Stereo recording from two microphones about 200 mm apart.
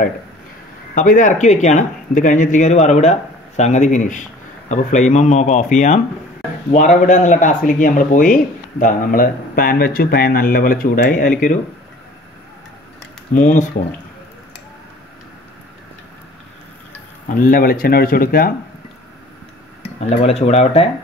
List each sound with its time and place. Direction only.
0.9 s speech: 40° left (ahead or behind)
13.3 s speech: 40° left (ahead or behind)
17.3 s speech: 45° left (ahead or behind)
19.8 s speech: 30° left (ahead or behind)